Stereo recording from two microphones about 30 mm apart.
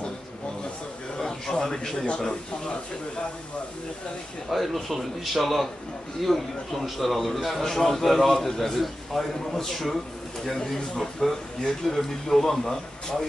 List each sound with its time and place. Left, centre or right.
1.1 s a sound: left
2.2 s speech: left
4.5 s a man's voice: centre